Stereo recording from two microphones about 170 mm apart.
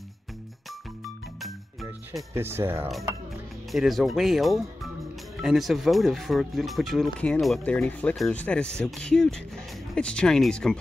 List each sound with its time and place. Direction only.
1.4 s music: centre (ahead or behind)
2.3 s speech: 15° right (ahead or behind)
3.7 s speech: centre (ahead or behind)